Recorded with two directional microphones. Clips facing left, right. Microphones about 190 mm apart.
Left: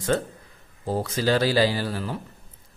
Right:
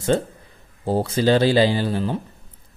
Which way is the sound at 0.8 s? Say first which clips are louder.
Right 5 dB; 30° right (ahead or behind).